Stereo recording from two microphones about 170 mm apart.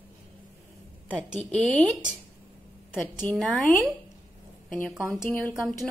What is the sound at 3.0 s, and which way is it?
Speech, 5° left (ahead or behind).